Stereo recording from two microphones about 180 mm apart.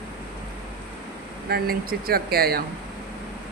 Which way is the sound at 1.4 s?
60° right (ahead or behind).